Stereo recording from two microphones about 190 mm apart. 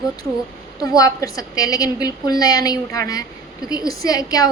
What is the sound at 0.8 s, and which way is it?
A woman's voice, 20° left (ahead or behind).